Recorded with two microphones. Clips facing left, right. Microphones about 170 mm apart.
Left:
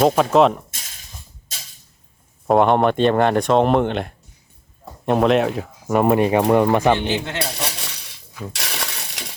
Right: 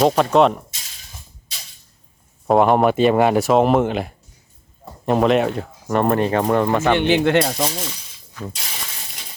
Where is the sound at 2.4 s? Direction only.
Centre (ahead or behind); by 6.9 s 15° left (ahead or behind).